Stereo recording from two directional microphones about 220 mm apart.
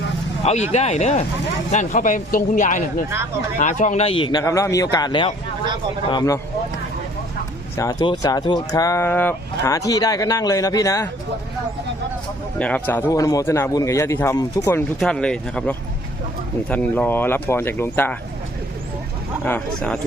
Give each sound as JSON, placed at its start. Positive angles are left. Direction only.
{"t": 0.4, "sound": "a man's voice", "side_deg": 30}
{"t": 7.8, "sound": "speech", "side_deg": 15}
{"t": 12.5, "sound": "speech", "side_deg": 5}
{"t": 19.5, "sound": "speech", "side_deg": 5}